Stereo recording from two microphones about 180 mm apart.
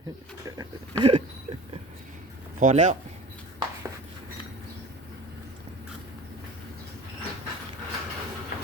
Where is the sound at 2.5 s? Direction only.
45° right (ahead or behind).